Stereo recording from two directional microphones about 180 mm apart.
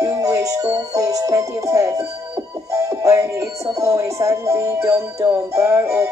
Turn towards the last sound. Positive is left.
turn(degrees=-15)  # may be behind; listen again after turning